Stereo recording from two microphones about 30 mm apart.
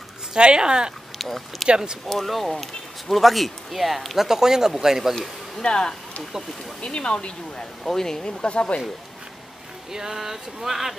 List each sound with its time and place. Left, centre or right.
0.3 s speech: right
1.1 s speech: centre
4.2 s speech: centre
5.6 s speech: left
7.8 s speech: centre; by 8.8 s left
9.9 s speech: centre